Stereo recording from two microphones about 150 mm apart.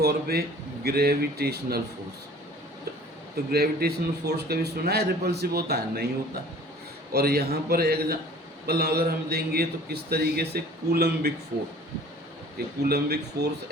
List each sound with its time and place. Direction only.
0.0 s a man's voice: 90° right
3.3 s a man's voice: 90° right
7.1 s a man's voice: 90° right
12.5 s a man's voice: 90° right